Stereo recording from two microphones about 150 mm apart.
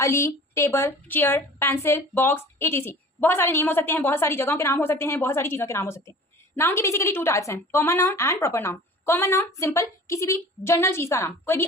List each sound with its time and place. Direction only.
0.0 s a woman's voice: 20° left (ahead or behind)